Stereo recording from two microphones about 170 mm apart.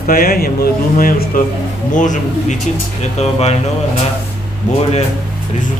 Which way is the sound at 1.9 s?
45° left (ahead or behind).